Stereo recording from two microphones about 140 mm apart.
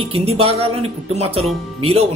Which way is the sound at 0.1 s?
45° right (ahead or behind).